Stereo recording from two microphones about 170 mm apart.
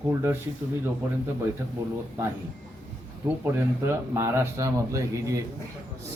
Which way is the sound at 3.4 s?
15° right (ahead or behind).